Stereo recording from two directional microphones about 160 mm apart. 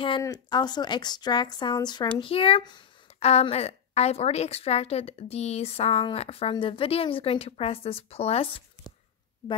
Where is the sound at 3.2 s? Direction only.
40° left (ahead or behind).